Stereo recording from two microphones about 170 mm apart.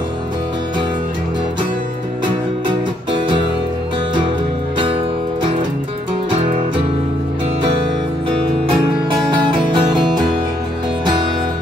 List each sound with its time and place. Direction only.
9.1 s music: 25° right (ahead or behind)